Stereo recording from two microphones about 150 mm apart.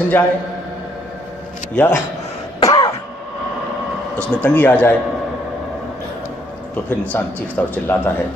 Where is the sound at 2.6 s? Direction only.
30° left (ahead or behind).